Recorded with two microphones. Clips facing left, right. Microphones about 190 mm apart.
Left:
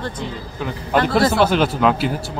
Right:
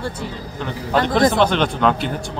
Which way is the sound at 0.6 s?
10° left (ahead or behind).